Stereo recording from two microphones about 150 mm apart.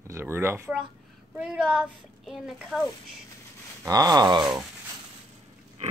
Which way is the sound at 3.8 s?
25° right (ahead or behind).